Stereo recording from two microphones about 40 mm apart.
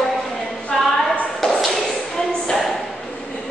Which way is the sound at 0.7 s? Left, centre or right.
Centre.